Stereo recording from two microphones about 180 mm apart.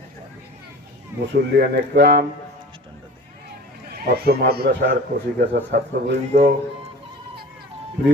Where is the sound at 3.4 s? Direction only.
60° right (ahead or behind).